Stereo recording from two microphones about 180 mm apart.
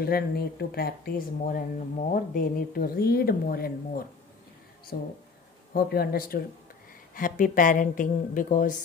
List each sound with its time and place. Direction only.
0.0 s a woman's voice: 60° left (ahead or behind)